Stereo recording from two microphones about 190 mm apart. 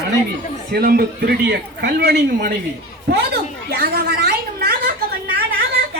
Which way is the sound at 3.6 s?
60° right (ahead or behind).